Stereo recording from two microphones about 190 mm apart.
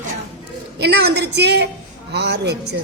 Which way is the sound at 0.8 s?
60° right (ahead or behind).